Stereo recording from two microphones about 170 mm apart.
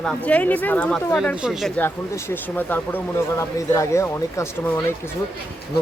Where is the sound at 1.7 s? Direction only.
10° left (ahead or behind).